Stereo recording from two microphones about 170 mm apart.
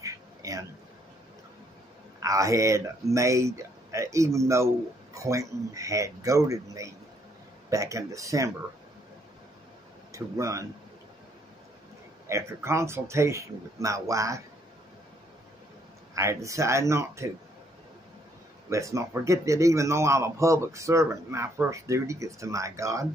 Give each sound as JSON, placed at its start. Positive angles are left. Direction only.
{"t": 0.0, "sound": "a sound", "side_deg": -20}
{"t": 2.1, "sound": "speech", "side_deg": -20}
{"t": 10.1, "sound": "speech", "side_deg": -20}
{"t": 12.3, "sound": "a man's voice", "side_deg": -15}
{"t": 16.2, "sound": "a man's voice", "side_deg": -20}
{"t": 18.7, "sound": "a man's voice", "side_deg": -20}